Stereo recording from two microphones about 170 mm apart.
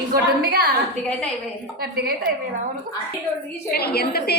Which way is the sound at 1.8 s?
65° right (ahead or behind).